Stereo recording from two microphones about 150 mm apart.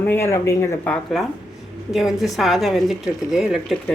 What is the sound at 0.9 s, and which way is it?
A woman's voice, centre (ahead or behind).